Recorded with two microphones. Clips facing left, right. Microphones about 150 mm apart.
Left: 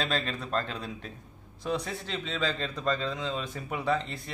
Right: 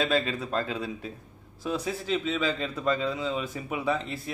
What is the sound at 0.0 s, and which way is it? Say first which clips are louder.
Speech: right 5 dB; 5° right (ahead or behind).